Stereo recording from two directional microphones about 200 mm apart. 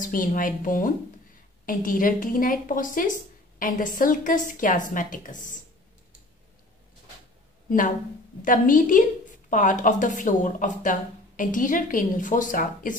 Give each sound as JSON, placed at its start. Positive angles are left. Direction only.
{"t": 0.0, "sound": "a woman's voice", "side_deg": 45}
{"t": 8.4, "sound": "a woman's voice", "side_deg": 40}